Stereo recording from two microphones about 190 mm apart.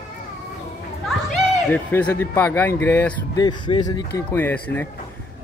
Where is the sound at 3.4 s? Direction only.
20° left (ahead or behind).